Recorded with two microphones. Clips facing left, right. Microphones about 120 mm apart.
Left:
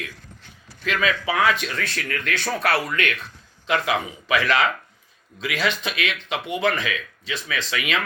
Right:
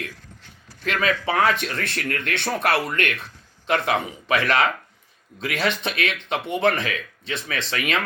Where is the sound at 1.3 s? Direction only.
55° right (ahead or behind).